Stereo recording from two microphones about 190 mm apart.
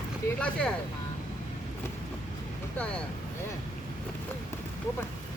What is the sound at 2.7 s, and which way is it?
Speech, 5° left (ahead or behind).